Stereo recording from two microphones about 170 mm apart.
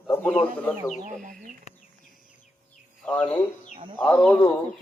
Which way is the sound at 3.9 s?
5° left (ahead or behind).